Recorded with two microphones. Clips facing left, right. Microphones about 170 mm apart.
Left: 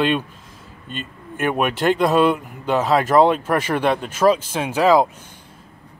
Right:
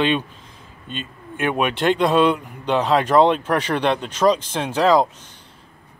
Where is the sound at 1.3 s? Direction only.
5° left (ahead or behind).